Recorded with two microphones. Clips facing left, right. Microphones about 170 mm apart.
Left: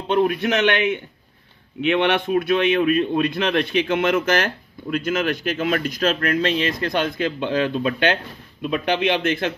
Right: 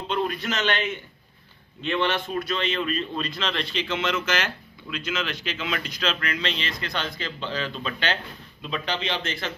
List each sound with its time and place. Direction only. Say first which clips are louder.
0.1 s a man's voice: left 9 dB; 60° left (ahead or behind)